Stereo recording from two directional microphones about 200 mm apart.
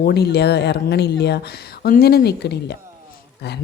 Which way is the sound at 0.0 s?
55° left (ahead or behind).